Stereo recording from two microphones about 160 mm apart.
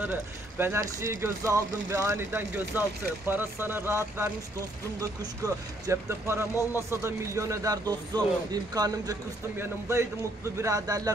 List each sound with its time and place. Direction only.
0.6 s speech: 15° right (ahead or behind)